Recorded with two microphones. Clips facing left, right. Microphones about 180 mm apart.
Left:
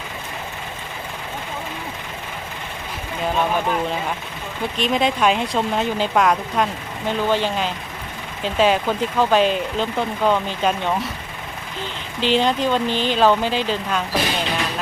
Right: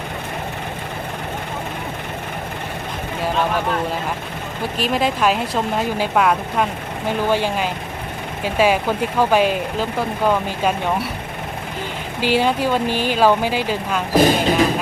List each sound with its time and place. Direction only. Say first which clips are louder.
4.8 s speech: even; 5° right (ahead or behind)
12.2 s speech: right 1 dB; 10° right (ahead or behind)
14.2 s speech: right 14 dB; 45° right (ahead or behind)